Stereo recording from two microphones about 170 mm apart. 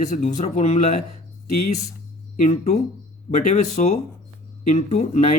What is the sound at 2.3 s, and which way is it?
A man's voice, 45° left (ahead or behind).